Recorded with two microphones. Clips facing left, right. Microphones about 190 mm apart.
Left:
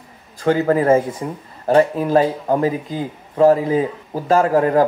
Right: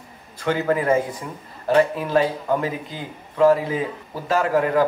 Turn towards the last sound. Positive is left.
turn(degrees=40)  # may be behind; listen again after turning